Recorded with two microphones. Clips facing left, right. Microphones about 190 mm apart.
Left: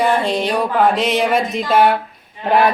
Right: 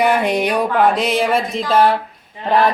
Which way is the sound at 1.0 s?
Centre (ahead or behind).